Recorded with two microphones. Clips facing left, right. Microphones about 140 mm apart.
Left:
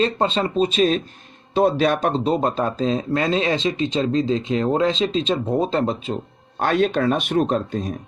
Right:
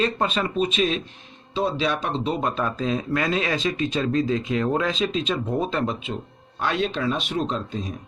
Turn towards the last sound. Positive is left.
turn(degrees=50)  # may be behind; listen again after turning